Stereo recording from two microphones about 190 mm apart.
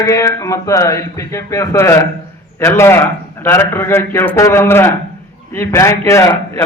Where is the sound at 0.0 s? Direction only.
15° left (ahead or behind).